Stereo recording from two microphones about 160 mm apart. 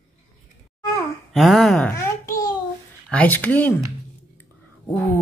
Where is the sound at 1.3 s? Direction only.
Centre (ahead or behind).